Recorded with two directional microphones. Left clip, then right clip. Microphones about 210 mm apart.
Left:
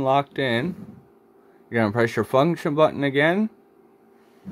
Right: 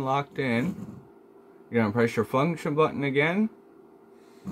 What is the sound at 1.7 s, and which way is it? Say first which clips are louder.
Speech: left 3 dB; 35° left (ahead or behind).